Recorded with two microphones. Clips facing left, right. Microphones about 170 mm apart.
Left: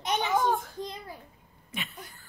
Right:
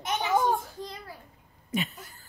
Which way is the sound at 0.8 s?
20° left (ahead or behind).